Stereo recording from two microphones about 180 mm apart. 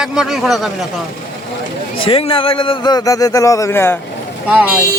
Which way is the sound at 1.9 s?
30° left (ahead or behind).